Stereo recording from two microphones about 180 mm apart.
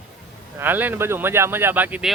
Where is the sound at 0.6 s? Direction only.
10° right (ahead or behind).